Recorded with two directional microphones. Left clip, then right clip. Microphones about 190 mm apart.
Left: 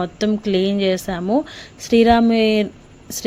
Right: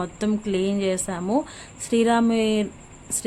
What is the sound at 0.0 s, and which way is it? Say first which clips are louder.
Speech: left 6 dB; 15° left (ahead or behind).